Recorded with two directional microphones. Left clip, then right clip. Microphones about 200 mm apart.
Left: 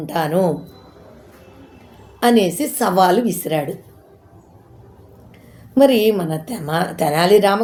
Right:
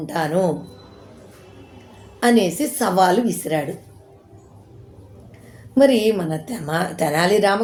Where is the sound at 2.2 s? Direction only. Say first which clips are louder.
Left 2 dB; 15° left (ahead or behind).